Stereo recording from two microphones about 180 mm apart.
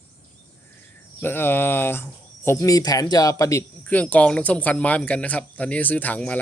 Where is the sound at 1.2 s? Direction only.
10° left (ahead or behind).